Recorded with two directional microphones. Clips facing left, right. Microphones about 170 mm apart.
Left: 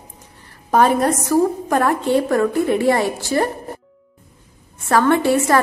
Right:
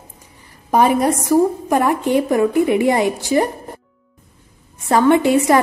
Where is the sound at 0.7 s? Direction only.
10° right (ahead or behind).